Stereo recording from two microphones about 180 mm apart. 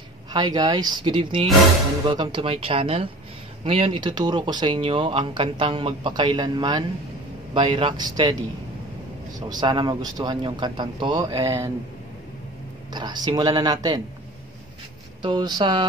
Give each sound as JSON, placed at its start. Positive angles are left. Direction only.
{"t": 0.3, "sound": "speech", "side_deg": -25}
{"t": 9.5, "sound": "speech", "side_deg": -25}
{"t": 12.9, "sound": "speech", "side_deg": -25}
{"t": 15.2, "sound": "speech", "side_deg": -25}